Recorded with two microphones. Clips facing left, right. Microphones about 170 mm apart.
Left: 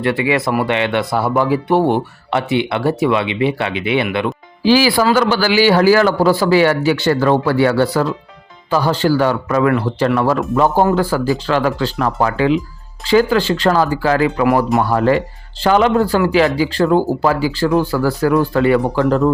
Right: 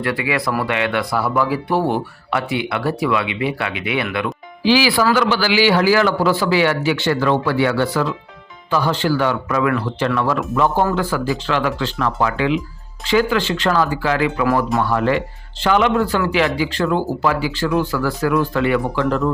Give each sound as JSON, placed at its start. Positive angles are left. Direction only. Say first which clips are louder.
{"t": 0.0, "sound": "speech", "louder": "left 4 dB", "side_deg": 25}
{"t": 4.6, "sound": "a man's voice", "louder": "left 3 dB", "side_deg": 45}